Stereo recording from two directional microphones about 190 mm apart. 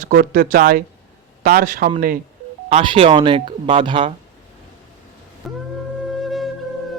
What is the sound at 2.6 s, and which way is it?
Speech, 30° right (ahead or behind).